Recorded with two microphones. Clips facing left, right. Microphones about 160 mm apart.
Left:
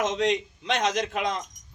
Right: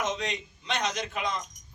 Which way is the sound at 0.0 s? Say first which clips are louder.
Left 7 dB; 90° left.